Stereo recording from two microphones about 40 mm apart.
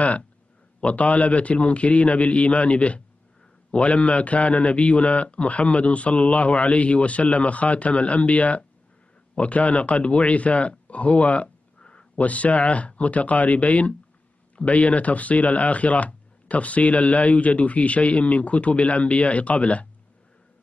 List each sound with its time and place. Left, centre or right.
0.7 s a man's voice: left
12.2 s speech: left